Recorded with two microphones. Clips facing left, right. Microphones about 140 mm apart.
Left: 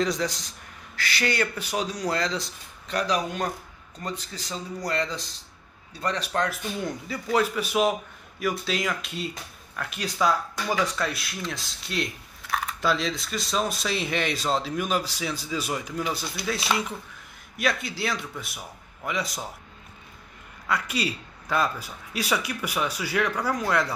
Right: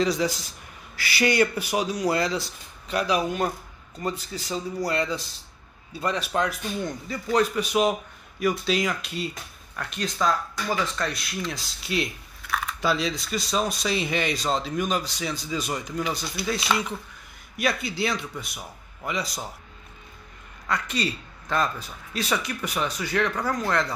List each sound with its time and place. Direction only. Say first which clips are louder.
0.0 s a man's voice: right 2 dB; 5° right (ahead or behind)
6.8 s speech: even; 5° left (ahead or behind)
20.6 s a man's voice: even; 5° left (ahead or behind)